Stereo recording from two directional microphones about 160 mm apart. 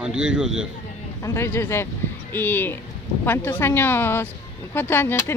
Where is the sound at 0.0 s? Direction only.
5° right (ahead or behind).